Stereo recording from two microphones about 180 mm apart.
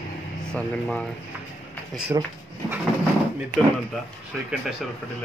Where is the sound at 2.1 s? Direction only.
20° right (ahead or behind).